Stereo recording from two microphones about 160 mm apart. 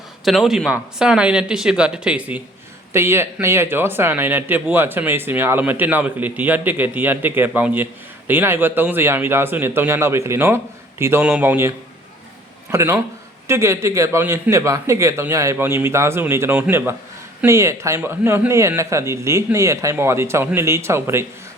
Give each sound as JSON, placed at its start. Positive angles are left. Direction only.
{"t": 0.3, "sound": "speech", "side_deg": 0}
{"t": 12.7, "sound": "speech", "side_deg": -20}